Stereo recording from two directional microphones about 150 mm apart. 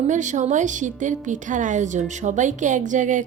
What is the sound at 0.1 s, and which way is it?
A woman's voice, 55° right (ahead or behind).